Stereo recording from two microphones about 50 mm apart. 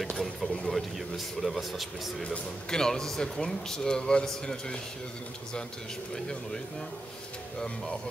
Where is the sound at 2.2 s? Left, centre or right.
Centre.